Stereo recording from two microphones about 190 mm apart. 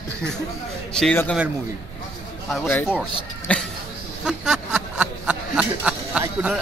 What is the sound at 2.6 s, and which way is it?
Speech, 10° left (ahead or behind).